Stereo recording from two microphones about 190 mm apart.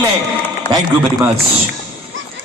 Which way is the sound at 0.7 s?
20° right (ahead or behind).